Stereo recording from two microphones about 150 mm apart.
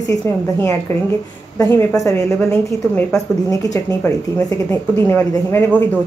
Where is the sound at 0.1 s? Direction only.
20° left (ahead or behind).